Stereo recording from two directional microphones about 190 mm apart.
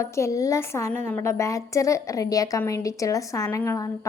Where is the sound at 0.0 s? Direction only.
15° left (ahead or behind).